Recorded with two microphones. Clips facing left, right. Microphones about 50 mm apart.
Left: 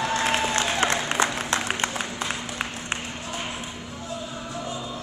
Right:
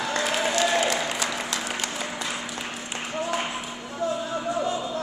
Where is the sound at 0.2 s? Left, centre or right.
Left.